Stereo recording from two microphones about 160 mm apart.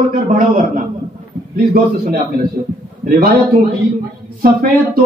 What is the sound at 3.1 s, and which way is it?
Speech, 75° right (ahead or behind).